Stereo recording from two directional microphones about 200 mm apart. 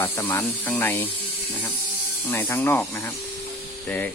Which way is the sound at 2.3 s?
10° left (ahead or behind).